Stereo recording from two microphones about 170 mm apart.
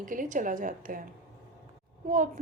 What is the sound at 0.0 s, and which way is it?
A woman's voice, 50° right (ahead or behind).